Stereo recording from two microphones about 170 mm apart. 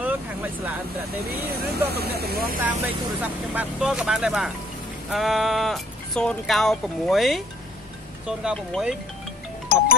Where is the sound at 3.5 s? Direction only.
5° right (ahead or behind).